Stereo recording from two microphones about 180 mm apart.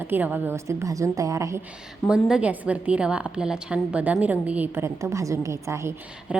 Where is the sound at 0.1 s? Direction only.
10° right (ahead or behind).